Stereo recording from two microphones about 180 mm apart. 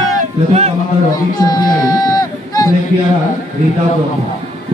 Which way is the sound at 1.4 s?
20° left (ahead or behind).